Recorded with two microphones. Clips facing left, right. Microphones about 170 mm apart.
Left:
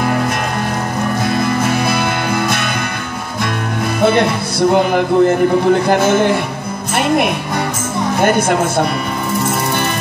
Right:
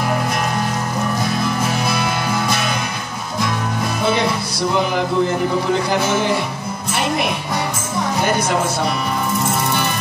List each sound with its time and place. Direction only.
1.2 s music: 55° left (ahead or behind)
4.0 s music: 55° left (ahead or behind)
8.2 s speech: 55° left (ahead or behind)